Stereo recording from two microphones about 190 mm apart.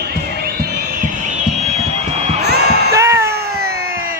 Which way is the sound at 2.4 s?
60° right (ahead or behind).